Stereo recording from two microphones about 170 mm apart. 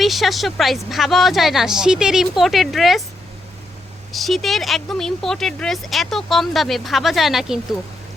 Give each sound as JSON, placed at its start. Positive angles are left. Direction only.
{"t": 0.0, "sound": "speech", "side_deg": 0}
{"t": 4.1, "sound": "speech", "side_deg": 0}